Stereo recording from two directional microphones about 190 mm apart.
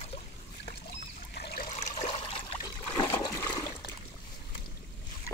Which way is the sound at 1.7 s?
40° left (ahead or behind).